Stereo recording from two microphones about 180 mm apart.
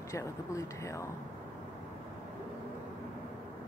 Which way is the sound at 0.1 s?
15° left (ahead or behind).